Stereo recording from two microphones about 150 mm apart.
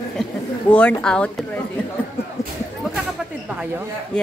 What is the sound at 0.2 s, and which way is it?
A woman's voice, 10° left (ahead or behind).